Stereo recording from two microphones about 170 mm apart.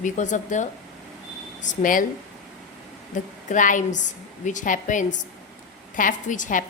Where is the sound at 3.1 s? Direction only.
45° left (ahead or behind).